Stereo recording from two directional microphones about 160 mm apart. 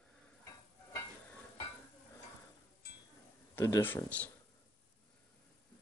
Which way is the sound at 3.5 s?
15° left (ahead or behind).